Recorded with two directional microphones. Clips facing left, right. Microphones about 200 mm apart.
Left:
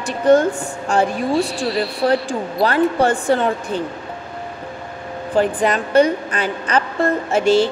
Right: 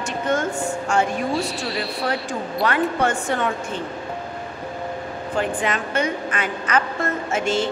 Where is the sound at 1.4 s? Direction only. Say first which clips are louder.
Left 6 dB; centre (ahead or behind).